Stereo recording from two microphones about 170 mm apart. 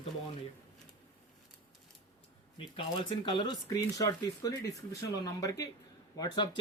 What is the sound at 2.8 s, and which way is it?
Speech, 30° left (ahead or behind).